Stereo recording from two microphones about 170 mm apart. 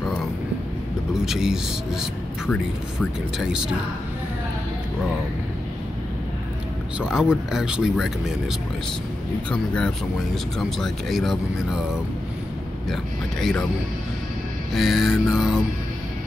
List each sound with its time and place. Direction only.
1.1 s speech: 5° right (ahead or behind)
2.4 s speech: 10° left (ahead or behind)
3.3 s speech: 5° right (ahead or behind)
7.0 s speech: 5° right (ahead or behind)
9.5 s speech: 5° left (ahead or behind)
12.9 s speech: centre (ahead or behind)
14.7 s speech: centre (ahead or behind)